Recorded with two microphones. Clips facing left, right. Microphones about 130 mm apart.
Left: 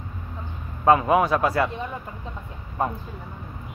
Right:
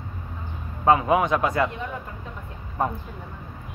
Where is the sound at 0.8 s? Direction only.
15° right (ahead or behind).